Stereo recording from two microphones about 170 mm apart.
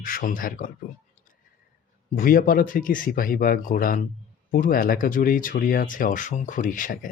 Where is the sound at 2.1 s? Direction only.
55° left (ahead or behind).